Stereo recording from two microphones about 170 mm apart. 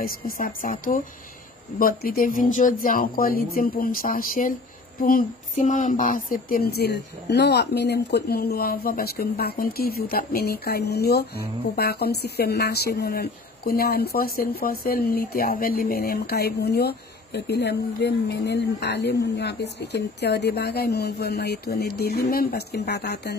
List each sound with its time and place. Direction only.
0.0 s speech: 55° left (ahead or behind); by 23.3 s 75° left (ahead or behind)